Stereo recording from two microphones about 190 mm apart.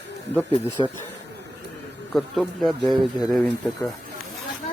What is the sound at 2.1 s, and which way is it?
A man's voice, centre (ahead or behind).